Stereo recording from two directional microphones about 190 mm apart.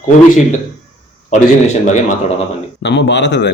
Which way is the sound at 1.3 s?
35° left (ahead or behind).